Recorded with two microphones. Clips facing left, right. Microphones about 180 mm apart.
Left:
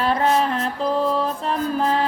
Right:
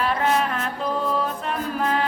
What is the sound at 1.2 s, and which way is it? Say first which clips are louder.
Music: left 4 dB; 35° left (ahead or behind).